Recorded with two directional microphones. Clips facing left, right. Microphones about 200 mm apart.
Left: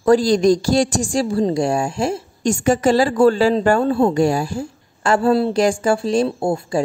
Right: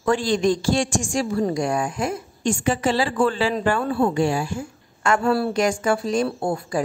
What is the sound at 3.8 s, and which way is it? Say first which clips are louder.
Speech: left 5 dB; 25° left (ahead or behind).